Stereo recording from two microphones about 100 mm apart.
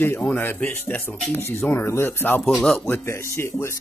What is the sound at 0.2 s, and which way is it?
Speech, 15° left (ahead or behind).